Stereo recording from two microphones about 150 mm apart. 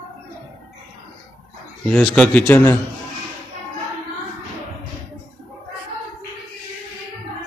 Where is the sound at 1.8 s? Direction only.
5° left (ahead or behind).